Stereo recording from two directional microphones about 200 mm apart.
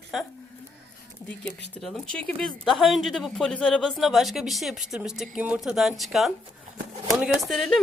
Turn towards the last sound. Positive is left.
turn(degrees=0)  # may be behind; listen again after turning